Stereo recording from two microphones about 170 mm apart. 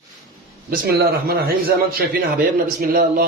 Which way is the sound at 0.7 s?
60° right (ahead or behind).